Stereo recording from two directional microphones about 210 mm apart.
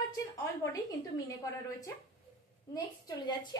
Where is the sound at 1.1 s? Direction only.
15° left (ahead or behind).